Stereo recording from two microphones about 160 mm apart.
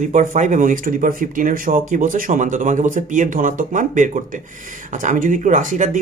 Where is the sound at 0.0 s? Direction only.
50° right (ahead or behind).